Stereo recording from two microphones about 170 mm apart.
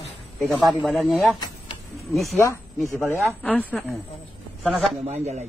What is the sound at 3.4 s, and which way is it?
Speech, 5° left (ahead or behind).